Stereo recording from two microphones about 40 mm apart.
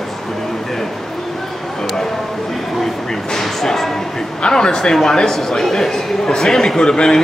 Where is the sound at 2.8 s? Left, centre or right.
Centre.